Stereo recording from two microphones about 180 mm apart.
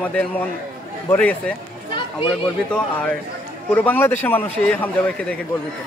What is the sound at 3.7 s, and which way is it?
Speech, 10° left (ahead or behind).